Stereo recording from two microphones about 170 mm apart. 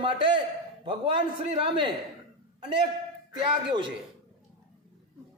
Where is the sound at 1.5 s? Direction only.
30° right (ahead or behind).